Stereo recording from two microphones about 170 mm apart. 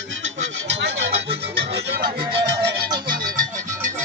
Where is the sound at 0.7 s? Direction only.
90° right.